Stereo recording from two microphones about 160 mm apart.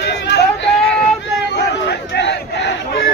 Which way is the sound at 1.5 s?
90° left.